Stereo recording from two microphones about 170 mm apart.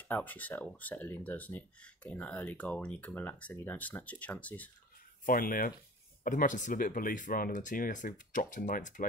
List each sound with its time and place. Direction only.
0.1 s speech: 10° left (ahead or behind)
5.2 s speech: 55° left (ahead or behind)